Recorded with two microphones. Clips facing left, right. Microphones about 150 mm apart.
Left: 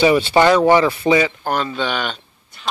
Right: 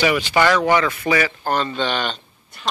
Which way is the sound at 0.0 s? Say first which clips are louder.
Left 4 dB; 30° left (ahead or behind).